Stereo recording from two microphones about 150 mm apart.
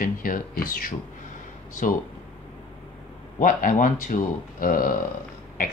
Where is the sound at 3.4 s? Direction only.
65° left (ahead or behind).